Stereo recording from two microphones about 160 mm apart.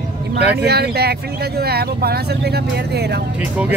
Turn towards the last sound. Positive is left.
turn(degrees=-85)